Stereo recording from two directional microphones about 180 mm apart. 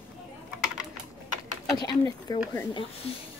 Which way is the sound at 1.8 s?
20° left (ahead or behind).